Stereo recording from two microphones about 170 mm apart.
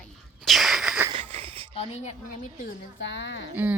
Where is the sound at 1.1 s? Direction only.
35° right (ahead or behind).